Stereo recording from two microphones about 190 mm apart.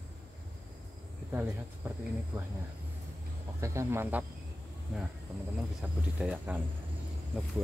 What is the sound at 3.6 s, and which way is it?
Speech, 15° right (ahead or behind).